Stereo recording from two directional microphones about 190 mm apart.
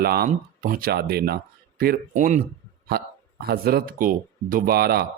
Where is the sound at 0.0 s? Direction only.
55° right (ahead or behind).